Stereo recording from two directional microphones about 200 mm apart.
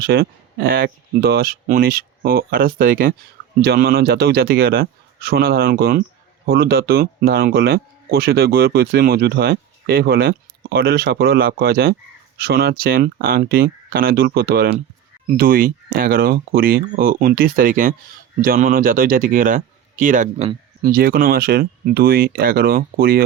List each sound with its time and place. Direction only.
0.0 s speech: 50° right (ahead or behind)